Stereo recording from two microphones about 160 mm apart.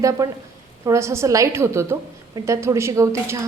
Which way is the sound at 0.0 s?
20° right (ahead or behind).